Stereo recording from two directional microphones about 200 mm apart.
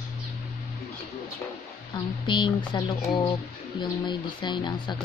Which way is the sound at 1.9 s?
25° left (ahead or behind).